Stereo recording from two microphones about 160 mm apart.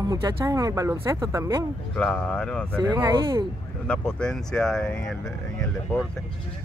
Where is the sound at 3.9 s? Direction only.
5° left (ahead or behind).